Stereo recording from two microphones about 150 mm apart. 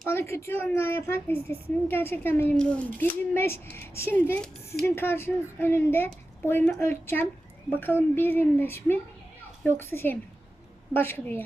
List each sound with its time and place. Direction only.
0.0 s a woman's voice: 15° left (ahead or behind)